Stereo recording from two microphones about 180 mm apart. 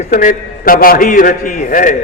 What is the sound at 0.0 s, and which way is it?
A man's voice, 50° left (ahead or behind).